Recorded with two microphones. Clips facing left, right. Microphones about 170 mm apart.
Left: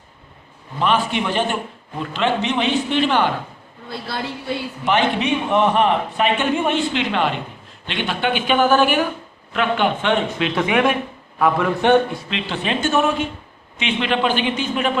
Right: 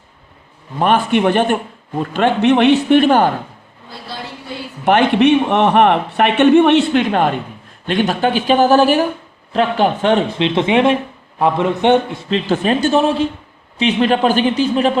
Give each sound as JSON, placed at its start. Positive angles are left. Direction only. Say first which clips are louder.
{"t": 0.8, "sound": "a man's voice", "louder": "right 6 dB", "side_deg": -50}
{"t": 4.9, "sound": "a man's voice", "louder": "right 7 dB", "side_deg": -60}
{"t": 6.9, "sound": "a man's voice", "louder": "right 6 dB", "side_deg": -45}
{"t": 12.3, "sound": "speech", "louder": "right 12 dB", "side_deg": -40}